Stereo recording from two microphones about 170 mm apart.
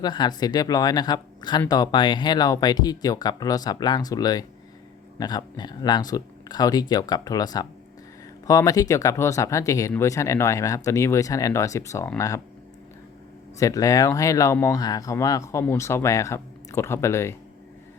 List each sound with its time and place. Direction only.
0.0 s speech: 25° left (ahead or behind)
13.6 s speech: 20° left (ahead or behind)